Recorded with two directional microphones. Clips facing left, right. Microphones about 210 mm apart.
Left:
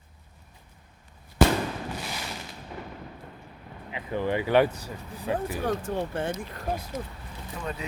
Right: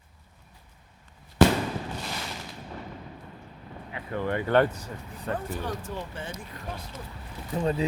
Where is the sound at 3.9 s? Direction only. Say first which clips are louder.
Left 2 dB; 15° left (ahead or behind).